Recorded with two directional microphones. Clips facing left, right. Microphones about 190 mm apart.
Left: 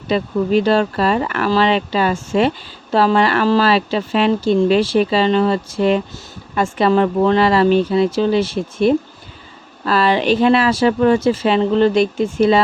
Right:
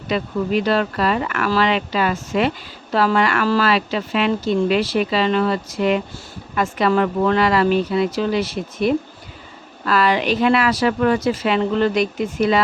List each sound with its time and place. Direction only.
0.1 s speech: 30° left (ahead or behind)